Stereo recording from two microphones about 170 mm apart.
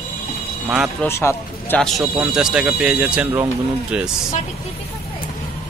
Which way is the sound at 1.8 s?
Centre (ahead or behind).